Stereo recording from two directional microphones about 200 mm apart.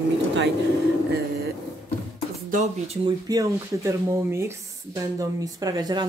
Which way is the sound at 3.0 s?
20° right (ahead or behind).